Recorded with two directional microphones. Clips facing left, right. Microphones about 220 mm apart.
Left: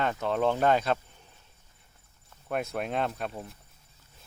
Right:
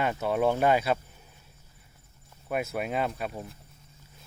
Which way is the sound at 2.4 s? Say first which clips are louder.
Right 1 dB; 5° right (ahead or behind).